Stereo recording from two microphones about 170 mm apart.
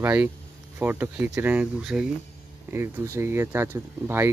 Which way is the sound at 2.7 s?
15° right (ahead or behind).